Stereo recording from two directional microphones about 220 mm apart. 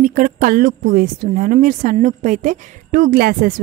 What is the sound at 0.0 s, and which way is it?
A woman's voice, 35° right (ahead or behind).